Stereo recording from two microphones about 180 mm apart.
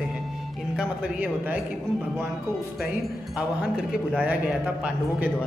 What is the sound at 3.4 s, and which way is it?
Speech, 5° right (ahead or behind).